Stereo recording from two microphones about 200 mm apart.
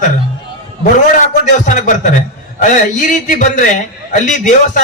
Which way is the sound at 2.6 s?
40° left (ahead or behind).